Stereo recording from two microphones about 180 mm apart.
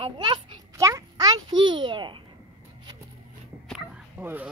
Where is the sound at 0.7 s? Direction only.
20° right (ahead or behind).